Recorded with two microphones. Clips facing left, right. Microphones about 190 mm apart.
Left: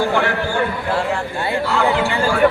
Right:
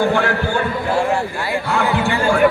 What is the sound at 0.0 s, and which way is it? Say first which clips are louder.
Speech: right 1 dB; 55° right (ahead or behind).